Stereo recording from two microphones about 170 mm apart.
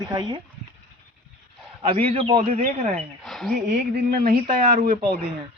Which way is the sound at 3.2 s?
Centre (ahead or behind).